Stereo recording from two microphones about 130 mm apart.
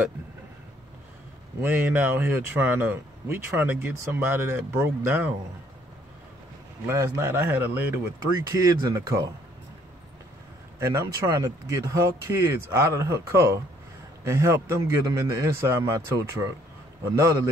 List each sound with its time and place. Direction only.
1.6 s speech: 15° right (ahead or behind)
6.9 s speech: 20° right (ahead or behind)
8.5 s speech: 25° right (ahead or behind)
10.8 s speech: 20° right (ahead or behind)